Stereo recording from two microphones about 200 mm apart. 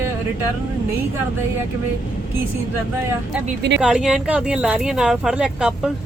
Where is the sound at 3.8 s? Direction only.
5° right (ahead or behind).